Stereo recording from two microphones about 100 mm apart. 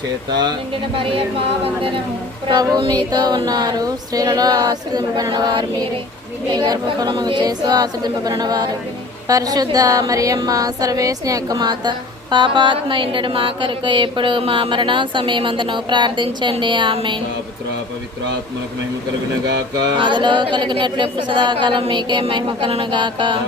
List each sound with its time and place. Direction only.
2.5 s female singing: 50° right (ahead or behind)
5.3 s speech: 45° right (ahead or behind)
6.6 s female singing: 45° right (ahead or behind)
9.2 s speech: 35° right (ahead or behind)
20.0 s speech: 50° right (ahead or behind)